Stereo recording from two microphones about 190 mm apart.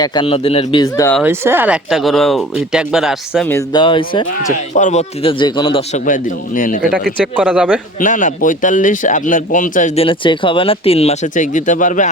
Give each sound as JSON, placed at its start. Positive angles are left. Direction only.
{"t": 0.0, "sound": "speech", "side_deg": 25}
{"t": 1.2, "sound": "speech", "side_deg": -10}
{"t": 3.4, "sound": "speech", "side_deg": 10}
{"t": 3.7, "sound": "speech", "side_deg": 25}
{"t": 4.3, "sound": "speech", "side_deg": 40}
{"t": 6.1, "sound": "a man's voice", "side_deg": 45}
{"t": 7.3, "sound": "a man's voice", "side_deg": -5}
{"t": 7.9, "sound": "speech", "side_deg": 40}